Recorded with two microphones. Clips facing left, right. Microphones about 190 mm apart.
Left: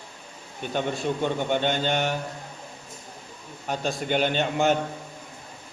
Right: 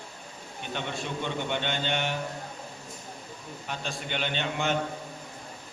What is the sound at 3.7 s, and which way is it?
A man's voice, 45° left (ahead or behind).